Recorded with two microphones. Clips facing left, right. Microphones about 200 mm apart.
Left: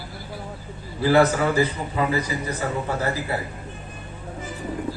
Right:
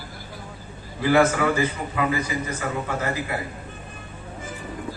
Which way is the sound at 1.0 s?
35° left (ahead or behind).